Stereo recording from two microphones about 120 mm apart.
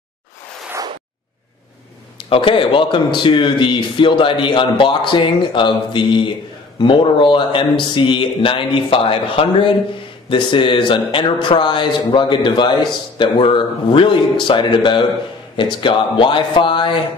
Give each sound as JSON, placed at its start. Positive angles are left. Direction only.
{"t": 2.1, "sound": "a man's voice", "side_deg": 50}